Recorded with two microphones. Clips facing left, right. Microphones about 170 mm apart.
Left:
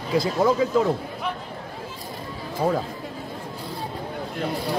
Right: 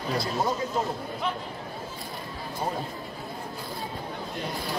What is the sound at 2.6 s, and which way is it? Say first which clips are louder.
Speech: left 9 dB; 90° left.